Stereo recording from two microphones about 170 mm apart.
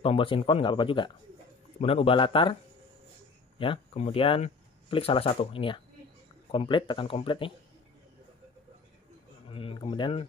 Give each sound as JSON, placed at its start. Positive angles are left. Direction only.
{"t": 0.0, "sound": "speech", "side_deg": 30}
{"t": 3.5, "sound": "speech", "side_deg": 30}
{"t": 9.5, "sound": "speech", "side_deg": 35}